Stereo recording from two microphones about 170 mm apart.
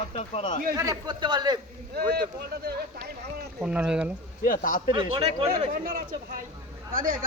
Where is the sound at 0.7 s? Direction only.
20° right (ahead or behind).